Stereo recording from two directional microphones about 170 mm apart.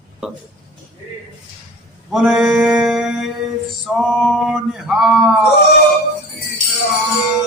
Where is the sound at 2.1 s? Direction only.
5° right (ahead or behind).